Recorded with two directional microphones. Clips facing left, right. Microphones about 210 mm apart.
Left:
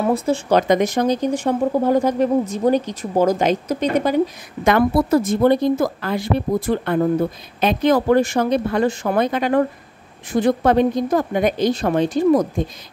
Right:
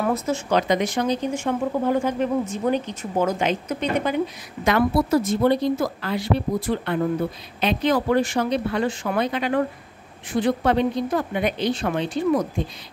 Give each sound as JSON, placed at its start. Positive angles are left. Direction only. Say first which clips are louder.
{"t": 0.0, "sound": "speech", "louder": "left 4 dB", "side_deg": 30}
{"t": 0.6, "sound": "speech", "louder": "left 4 dB", "side_deg": 50}
{"t": 4.6, "sound": "speech", "louder": "left 4 dB", "side_deg": 50}